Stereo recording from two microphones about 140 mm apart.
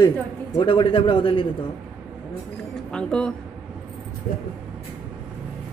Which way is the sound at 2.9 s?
5° left (ahead or behind).